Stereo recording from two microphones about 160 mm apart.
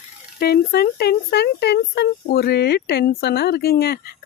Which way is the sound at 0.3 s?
75° left (ahead or behind).